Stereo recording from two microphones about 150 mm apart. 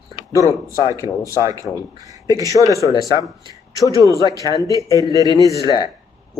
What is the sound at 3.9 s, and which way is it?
Speech, 25° right (ahead or behind).